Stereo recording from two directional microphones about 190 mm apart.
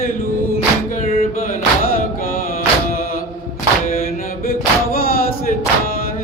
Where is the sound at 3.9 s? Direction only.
50° left (ahead or behind).